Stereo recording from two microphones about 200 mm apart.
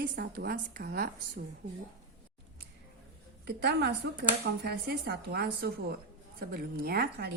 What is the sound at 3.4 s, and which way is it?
A woman's voice, 55° right (ahead or behind).